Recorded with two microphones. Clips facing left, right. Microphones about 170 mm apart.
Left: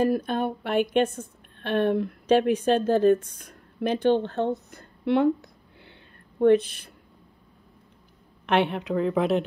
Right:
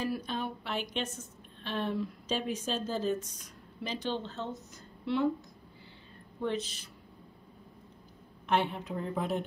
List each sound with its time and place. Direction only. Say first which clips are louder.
0.0 s a woman's voice: left 10 dB; 55° left (ahead or behind)
6.4 s a woman's voice: left 15 dB; 60° left (ahead or behind)
8.5 s speech: left 7 dB; 75° left (ahead or behind)